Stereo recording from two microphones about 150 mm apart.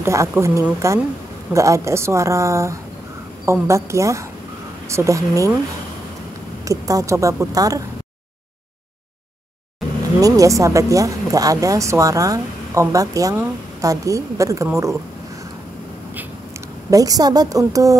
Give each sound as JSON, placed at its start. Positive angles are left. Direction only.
{"t": 0.0, "sound": "speech", "side_deg": -20}
{"t": 6.6, "sound": "speech", "side_deg": -20}
{"t": 10.2, "sound": "speech", "side_deg": -20}
{"t": 16.9, "sound": "speech", "side_deg": -25}